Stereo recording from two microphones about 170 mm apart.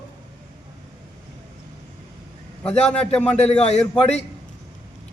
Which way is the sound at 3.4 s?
40° left (ahead or behind).